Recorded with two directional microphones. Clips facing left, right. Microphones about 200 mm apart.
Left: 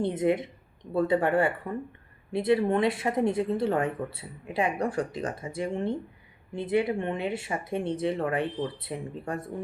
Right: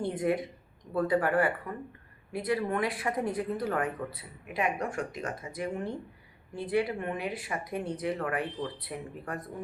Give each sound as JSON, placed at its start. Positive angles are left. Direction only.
{"t": 0.0, "sound": "speech", "side_deg": 20}